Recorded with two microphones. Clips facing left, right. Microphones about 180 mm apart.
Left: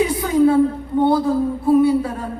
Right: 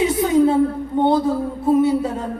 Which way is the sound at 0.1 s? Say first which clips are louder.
Even; 20° right (ahead or behind).